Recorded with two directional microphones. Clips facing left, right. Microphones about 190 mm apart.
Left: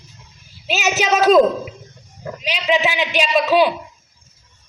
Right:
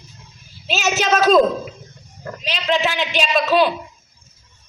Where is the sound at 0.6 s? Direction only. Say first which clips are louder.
Left 1 dB; 15° left (ahead or behind).